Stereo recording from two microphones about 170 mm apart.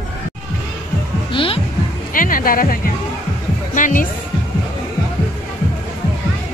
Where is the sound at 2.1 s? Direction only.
55° left (ahead or behind).